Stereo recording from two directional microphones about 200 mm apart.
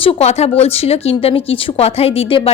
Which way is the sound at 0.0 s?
30° left (ahead or behind).